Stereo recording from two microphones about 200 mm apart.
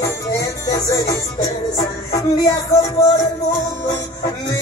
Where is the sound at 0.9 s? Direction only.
15° left (ahead or behind).